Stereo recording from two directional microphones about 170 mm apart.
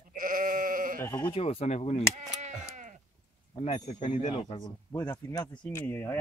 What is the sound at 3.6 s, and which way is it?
Speech, 40° left (ahead or behind).